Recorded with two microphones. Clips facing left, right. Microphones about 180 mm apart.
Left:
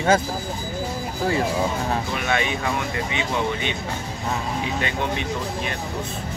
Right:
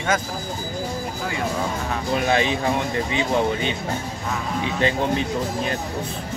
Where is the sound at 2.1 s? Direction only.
35° right (ahead or behind).